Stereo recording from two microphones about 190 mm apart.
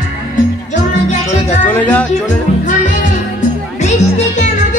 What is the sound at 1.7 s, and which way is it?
Music, 10° left (ahead or behind).